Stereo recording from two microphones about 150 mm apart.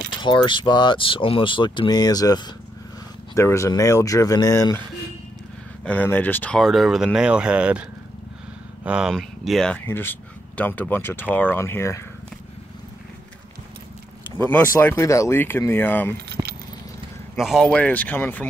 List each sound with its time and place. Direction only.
0.2 s speech: 30° left (ahead or behind)
5.9 s speech: 10° left (ahead or behind); by 7.8 s 5° right (ahead or behind)
8.8 s speech: 5° right (ahead or behind)
9.8 s speech: 15° left (ahead or behind)
14.3 s speech: 15° left (ahead or behind)
16.4 s keys jangling: 20° right (ahead or behind)
17.4 s speech: centre (ahead or behind)